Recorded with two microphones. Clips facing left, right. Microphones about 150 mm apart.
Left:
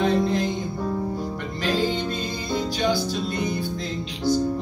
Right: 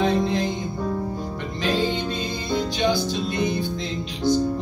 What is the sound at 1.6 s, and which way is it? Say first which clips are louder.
Music: right 1 dB; 20° right (ahead or behind).